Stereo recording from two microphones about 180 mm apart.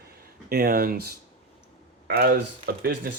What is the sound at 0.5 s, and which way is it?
Speech, 55° right (ahead or behind).